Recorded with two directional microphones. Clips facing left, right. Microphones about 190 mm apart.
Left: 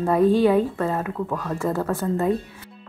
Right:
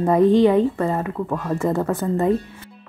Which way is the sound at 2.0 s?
Centre (ahead or behind).